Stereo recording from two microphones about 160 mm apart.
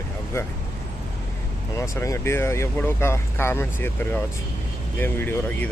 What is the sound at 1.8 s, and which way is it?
Speech, 20° left (ahead or behind).